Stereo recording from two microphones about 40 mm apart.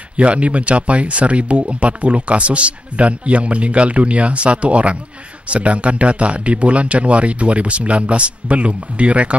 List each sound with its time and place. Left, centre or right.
0.2 s speech: right